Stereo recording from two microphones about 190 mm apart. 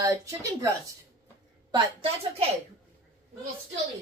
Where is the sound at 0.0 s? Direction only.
15° right (ahead or behind).